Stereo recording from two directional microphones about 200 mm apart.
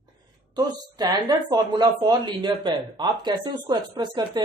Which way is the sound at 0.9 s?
20° right (ahead or behind).